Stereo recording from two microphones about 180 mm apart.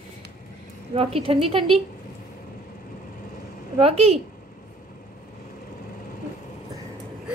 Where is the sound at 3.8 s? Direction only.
35° right (ahead or behind).